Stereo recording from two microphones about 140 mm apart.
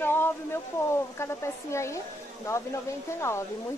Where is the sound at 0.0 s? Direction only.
15° left (ahead or behind).